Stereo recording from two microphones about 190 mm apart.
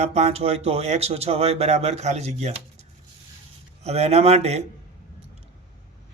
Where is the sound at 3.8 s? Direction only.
35° right (ahead or behind).